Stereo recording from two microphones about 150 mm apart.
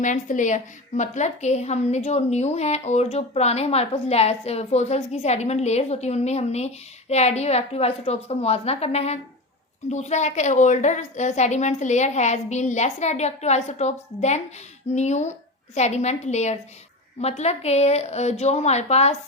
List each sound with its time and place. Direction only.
0.0 s a woman's voice: 55° left (ahead or behind)